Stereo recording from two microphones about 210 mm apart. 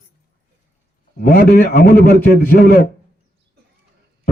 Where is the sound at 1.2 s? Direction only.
45° left (ahead or behind).